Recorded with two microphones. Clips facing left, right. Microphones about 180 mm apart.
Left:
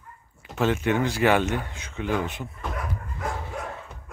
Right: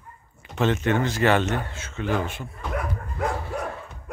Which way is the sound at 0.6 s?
10° left (ahead or behind).